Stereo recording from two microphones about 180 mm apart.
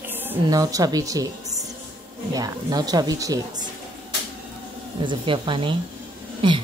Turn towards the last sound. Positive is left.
turn(degrees=-25)  # may be behind; listen again after turning